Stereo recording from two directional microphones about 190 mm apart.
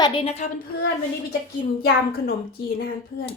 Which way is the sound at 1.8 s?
55° left (ahead or behind).